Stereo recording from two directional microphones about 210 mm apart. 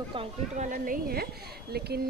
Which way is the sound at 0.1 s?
25° right (ahead or behind).